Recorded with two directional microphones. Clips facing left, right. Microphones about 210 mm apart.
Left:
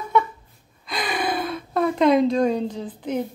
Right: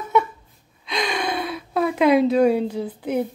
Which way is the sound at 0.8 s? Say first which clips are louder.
Right 1 dB; 5° left (ahead or behind).